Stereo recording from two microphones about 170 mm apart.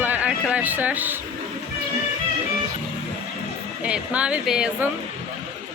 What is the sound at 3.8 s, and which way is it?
Speech, 5° right (ahead or behind).